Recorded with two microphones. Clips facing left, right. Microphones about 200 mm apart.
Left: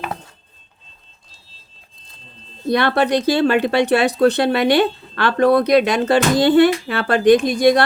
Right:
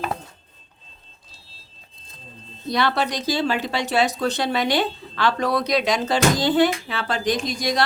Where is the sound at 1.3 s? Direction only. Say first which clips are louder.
Right 1 dB; centre (ahead or behind).